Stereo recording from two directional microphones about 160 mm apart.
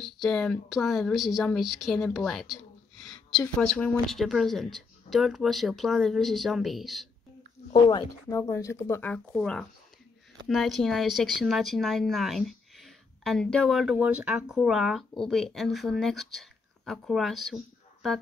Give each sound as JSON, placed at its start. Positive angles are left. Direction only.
{"t": 0.0, "sound": "speech", "side_deg": 0}
{"t": 7.9, "sound": "speech", "side_deg": 20}